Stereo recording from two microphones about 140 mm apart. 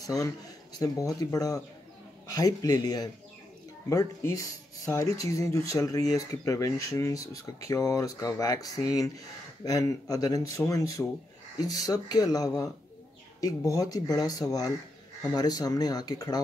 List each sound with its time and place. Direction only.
0.0 s a man's voice: 25° left (ahead or behind)